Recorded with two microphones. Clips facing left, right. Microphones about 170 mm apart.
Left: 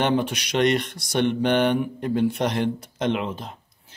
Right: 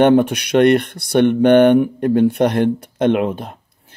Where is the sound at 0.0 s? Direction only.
60° right (ahead or behind).